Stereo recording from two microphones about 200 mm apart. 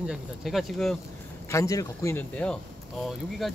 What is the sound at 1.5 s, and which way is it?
Speech, 15° left (ahead or behind).